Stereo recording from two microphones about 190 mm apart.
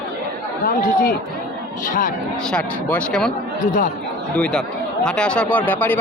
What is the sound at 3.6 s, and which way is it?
Speech, 45° left (ahead or behind).